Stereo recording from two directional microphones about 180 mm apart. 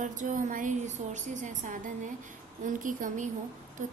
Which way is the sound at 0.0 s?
45° right (ahead or behind).